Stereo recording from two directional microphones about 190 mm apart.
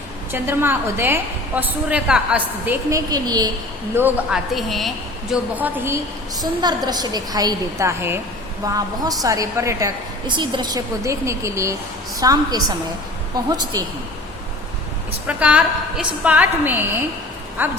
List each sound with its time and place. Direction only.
0.3 s a woman's voice: 10° right (ahead or behind)
3.1 s a woman's voice: 20° right (ahead or behind)
3.9 s a woman's voice: 5° right (ahead or behind)
6.4 s a woman's voice: 20° right (ahead or behind)
15.3 s a woman's voice: 5° right (ahead or behind)